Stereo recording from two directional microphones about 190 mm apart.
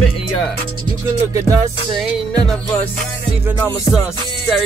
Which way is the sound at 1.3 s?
15° right (ahead or behind).